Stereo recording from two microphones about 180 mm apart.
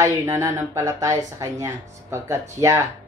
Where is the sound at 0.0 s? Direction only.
15° right (ahead or behind).